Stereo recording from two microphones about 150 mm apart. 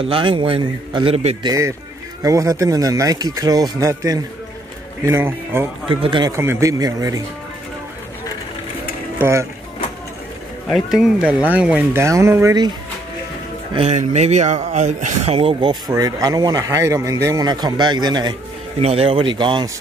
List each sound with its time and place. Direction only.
0.0 s a man's voice: 35° right (ahead or behind)
1.4 s a man's voice: 20° right (ahead or behind)
5.9 s a man's voice: 35° right (ahead or behind)
6.3 s a man's voice: 20° right (ahead or behind)
9.2 s a man's voice: 20° right (ahead or behind)
10.7 s speech: 5° right (ahead or behind); by 12.7 s 25° right (ahead or behind)
13.7 s speech: 50° right (ahead or behind)
15.9 s a man's voice: 25° right (ahead or behind)
18.8 s a man's voice: 40° right (ahead or behind)